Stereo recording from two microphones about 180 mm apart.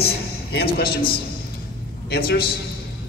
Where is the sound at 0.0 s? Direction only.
60° left (ahead or behind).